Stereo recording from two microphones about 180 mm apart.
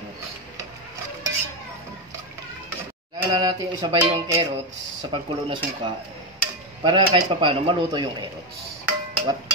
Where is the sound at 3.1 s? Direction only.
20° right (ahead or behind).